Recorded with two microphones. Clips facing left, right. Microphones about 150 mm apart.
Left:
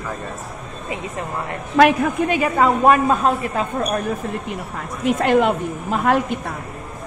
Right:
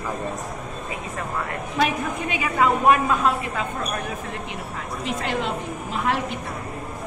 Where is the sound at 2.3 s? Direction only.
40° left (ahead or behind).